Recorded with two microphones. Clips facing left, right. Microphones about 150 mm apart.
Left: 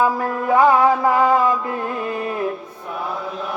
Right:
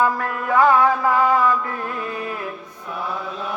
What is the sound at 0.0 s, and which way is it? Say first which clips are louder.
Mantra: left 2 dB; 20° left (ahead or behind).